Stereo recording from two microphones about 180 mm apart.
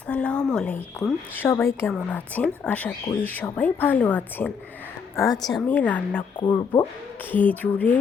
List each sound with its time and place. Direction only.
0.1 s speech: 5° left (ahead or behind)
5.1 s speech: 20° left (ahead or behind)
5.4 s speech: centre (ahead or behind)
6.4 s speech: 25° left (ahead or behind)
7.3 s speech: 10° left (ahead or behind)